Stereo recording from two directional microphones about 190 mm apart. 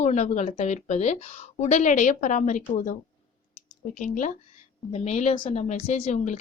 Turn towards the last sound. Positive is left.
turn(degrees=40)  # may be behind; listen again after turning